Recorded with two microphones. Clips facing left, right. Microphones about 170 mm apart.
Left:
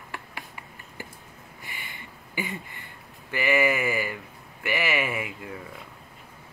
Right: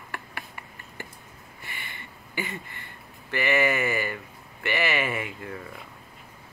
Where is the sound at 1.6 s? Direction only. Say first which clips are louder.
Right 1 dB; 15° left (ahead or behind).